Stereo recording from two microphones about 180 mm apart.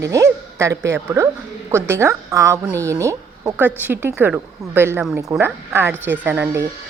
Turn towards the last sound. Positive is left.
turn(degrees=-10)  # may be behind; listen again after turning